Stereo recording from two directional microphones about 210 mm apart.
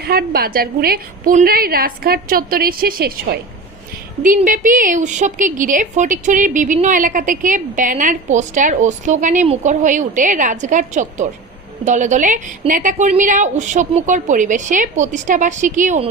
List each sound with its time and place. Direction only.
0.1 s a woman's voice: 45° right (ahead or behind)